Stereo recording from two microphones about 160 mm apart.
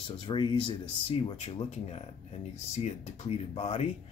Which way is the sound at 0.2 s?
30° left (ahead or behind).